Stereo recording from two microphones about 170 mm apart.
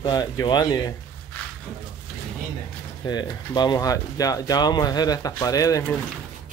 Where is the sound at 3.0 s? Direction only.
25° left (ahead or behind).